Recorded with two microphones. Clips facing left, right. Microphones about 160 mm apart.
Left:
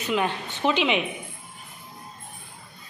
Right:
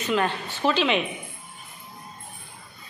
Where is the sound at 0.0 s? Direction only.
10° left (ahead or behind).